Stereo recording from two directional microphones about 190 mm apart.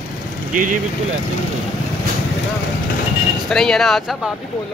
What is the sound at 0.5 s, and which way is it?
Speech, 45° right (ahead or behind).